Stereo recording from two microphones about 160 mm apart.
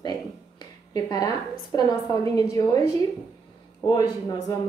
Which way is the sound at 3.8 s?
25° left (ahead or behind).